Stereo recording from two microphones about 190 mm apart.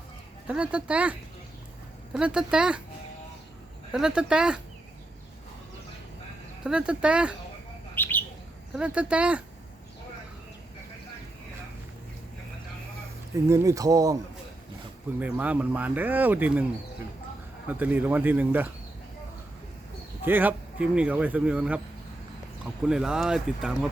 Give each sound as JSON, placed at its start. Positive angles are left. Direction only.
{"t": 0.4, "sound": "speech", "side_deg": -5}
{"t": 2.1, "sound": "speech", "side_deg": -5}
{"t": 3.9, "sound": "speech", "side_deg": -5}
{"t": 6.7, "sound": "speech", "side_deg": -5}
{"t": 7.9, "sound": "bird", "side_deg": 10}
{"t": 8.7, "sound": "speech", "side_deg": -5}
{"t": 13.3, "sound": "speech", "side_deg": -15}
{"t": 15.2, "sound": "speech", "side_deg": -10}
{"t": 17.7, "sound": "speech", "side_deg": -10}
{"t": 20.2, "sound": "speech", "side_deg": -10}
{"t": 22.8, "sound": "speech", "side_deg": -5}